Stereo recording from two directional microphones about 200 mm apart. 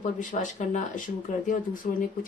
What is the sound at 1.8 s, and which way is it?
Speech, 40° left (ahead or behind).